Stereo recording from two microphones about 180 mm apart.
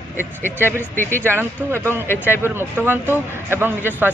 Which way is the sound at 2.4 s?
10° right (ahead or behind).